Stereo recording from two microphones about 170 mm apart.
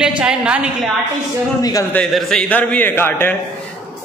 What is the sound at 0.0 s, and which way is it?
Speech, 5° right (ahead or behind).